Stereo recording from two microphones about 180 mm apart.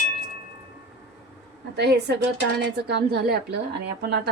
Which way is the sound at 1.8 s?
65° right (ahead or behind).